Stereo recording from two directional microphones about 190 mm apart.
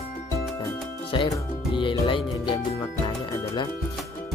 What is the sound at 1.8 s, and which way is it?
Speech, 25° left (ahead or behind).